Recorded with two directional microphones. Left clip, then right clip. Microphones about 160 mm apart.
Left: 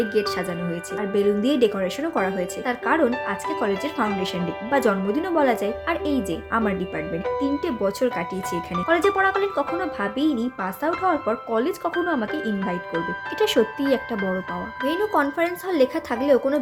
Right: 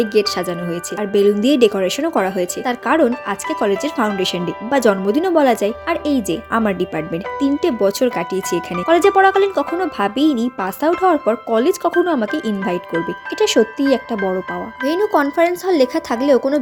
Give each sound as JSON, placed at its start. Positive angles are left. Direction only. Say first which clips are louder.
{"t": 0.0, "sound": "speech", "louder": "right 6 dB", "side_deg": -45}
{"t": 13.4, "sound": "speech", "louder": "right 6 dB", "side_deg": -30}